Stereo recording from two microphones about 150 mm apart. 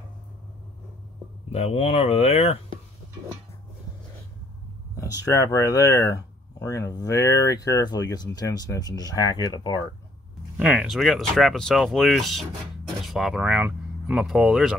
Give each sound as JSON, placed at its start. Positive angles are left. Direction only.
{"t": 1.5, "sound": "speech", "side_deg": 40}
{"t": 4.9, "sound": "speech", "side_deg": 20}
{"t": 10.6, "sound": "speech", "side_deg": -5}